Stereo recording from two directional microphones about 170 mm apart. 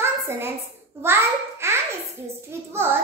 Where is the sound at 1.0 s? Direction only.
15° right (ahead or behind).